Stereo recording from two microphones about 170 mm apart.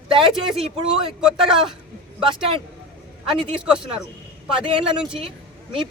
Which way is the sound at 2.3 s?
30° right (ahead or behind).